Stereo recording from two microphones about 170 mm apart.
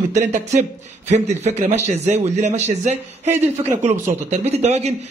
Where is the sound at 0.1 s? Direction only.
45° right (ahead or behind).